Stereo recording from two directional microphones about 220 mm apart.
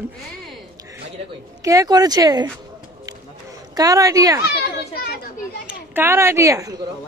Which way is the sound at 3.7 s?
15° right (ahead or behind).